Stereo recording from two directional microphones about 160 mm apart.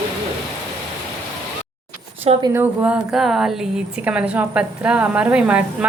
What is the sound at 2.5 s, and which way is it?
Speech, 10° right (ahead or behind).